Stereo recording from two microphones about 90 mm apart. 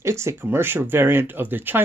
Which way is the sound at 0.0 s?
30° right (ahead or behind).